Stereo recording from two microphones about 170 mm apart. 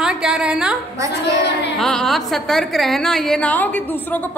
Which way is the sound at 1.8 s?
Centre (ahead or behind).